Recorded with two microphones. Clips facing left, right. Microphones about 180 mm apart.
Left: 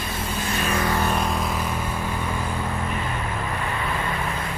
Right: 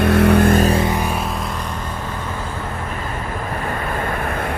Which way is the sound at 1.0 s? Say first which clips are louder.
Right 1 dB; 5° right (ahead or behind).